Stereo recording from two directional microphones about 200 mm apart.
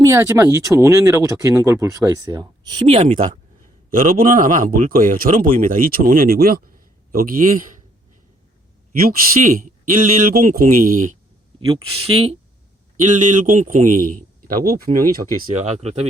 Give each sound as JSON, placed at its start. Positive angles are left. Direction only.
{"t": 0.0, "sound": "speech", "side_deg": -15}
{"t": 3.9, "sound": "a man's voice", "side_deg": -45}
{"t": 8.9, "sound": "a man's voice", "side_deg": -45}
{"t": 11.6, "sound": "a man's voice", "side_deg": -30}
{"t": 15.8, "sound": "speech", "side_deg": -30}